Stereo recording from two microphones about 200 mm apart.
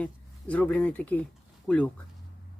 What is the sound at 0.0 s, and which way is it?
Speech, 5° left (ahead or behind).